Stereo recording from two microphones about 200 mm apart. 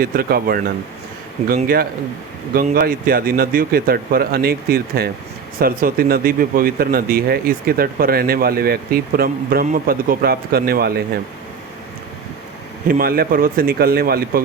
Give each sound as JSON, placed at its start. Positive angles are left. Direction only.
{"t": 0.0, "sound": "speech", "side_deg": -50}
{"t": 12.9, "sound": "speech", "side_deg": -45}